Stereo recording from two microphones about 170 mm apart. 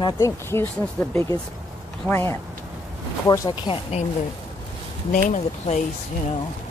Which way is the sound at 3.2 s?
25° left (ahead or behind).